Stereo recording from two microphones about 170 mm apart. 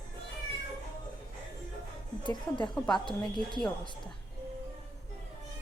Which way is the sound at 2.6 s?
5° left (ahead or behind).